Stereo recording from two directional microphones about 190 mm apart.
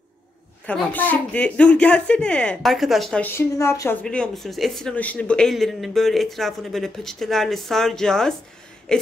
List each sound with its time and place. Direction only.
0.7 s a woman's voice: 10° left (ahead or behind)